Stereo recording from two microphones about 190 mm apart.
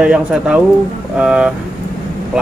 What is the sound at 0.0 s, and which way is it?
Speech, 5° right (ahead or behind).